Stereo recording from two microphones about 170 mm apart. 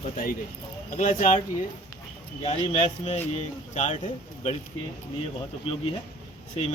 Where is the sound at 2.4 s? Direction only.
35° left (ahead or behind).